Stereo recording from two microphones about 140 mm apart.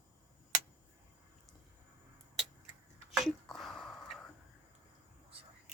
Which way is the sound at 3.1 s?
Centre (ahead or behind).